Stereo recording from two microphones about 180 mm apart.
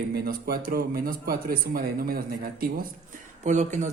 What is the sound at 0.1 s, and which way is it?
Speech, 60° right (ahead or behind).